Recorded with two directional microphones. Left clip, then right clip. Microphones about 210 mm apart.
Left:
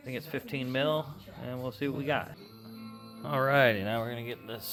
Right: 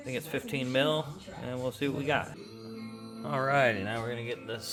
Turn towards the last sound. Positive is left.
turn(degrees=40)  # may be behind; listen again after turning